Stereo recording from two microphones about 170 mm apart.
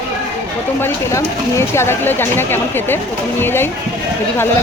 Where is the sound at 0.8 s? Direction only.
15° left (ahead or behind).